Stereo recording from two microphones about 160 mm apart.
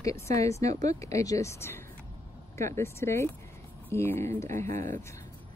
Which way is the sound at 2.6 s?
15° left (ahead or behind).